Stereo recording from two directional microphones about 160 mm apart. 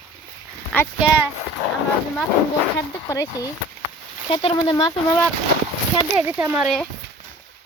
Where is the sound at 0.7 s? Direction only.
10° left (ahead or behind).